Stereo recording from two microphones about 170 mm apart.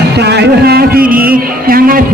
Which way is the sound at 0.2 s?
75° right (ahead or behind).